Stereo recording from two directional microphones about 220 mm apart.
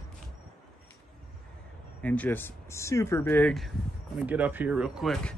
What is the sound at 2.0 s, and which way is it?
A man's voice, 5° left (ahead or behind).